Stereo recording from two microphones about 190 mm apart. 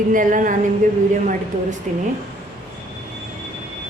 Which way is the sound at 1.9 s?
40° right (ahead or behind).